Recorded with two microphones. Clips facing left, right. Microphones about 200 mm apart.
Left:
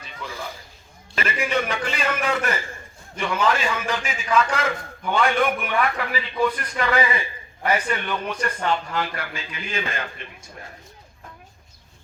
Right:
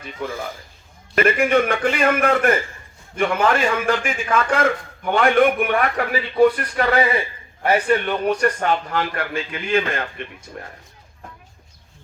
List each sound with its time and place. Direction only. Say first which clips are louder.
0.0 s a man's voice: right 6 dB; 55° right (ahead or behind)
6.3 s a man's voice: right 9 dB; 40° right (ahead or behind)
7.6 s a man's voice: right 6 dB; 55° right (ahead or behind)
8.1 s a man's voice: right 8 dB; 40° right (ahead or behind)